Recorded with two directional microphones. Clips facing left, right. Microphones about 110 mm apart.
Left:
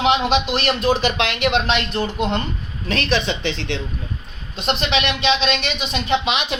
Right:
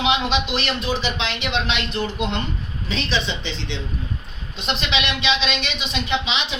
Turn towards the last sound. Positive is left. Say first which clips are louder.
# left 4 dB
turn(degrees=50)  # may be behind; listen again after turning